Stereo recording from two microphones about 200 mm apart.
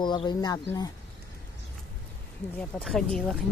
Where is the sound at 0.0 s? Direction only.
20° left (ahead or behind).